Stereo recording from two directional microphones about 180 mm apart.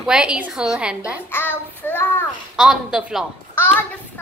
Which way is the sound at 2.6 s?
5° right (ahead or behind).